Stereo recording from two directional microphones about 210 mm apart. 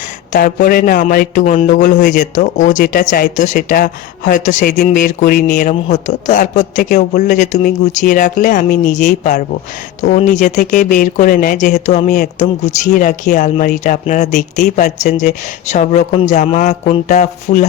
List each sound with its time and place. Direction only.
0.3 s speech: 40° left (ahead or behind)